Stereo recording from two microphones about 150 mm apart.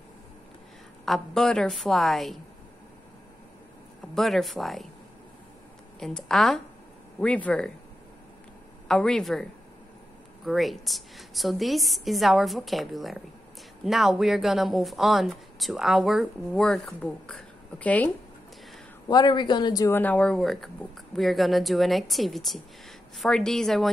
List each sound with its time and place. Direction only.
1.0 s speech: centre (ahead or behind)
4.1 s speech: centre (ahead or behind)
5.9 s speech: 5° left (ahead or behind)
8.8 s speech: 5° left (ahead or behind)
19.0 s speech: 30° left (ahead or behind)
20.0 s speech: 10° left (ahead or behind)